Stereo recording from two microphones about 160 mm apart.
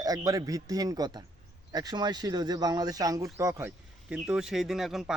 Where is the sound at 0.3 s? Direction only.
20° right (ahead or behind).